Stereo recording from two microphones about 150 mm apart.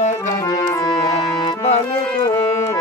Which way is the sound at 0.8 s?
25° left (ahead or behind).